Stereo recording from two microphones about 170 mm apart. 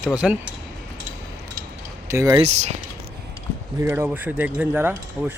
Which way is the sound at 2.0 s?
20° right (ahead or behind).